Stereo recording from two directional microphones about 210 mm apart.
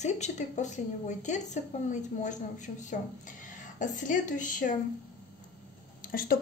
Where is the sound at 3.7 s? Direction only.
35° left (ahead or behind).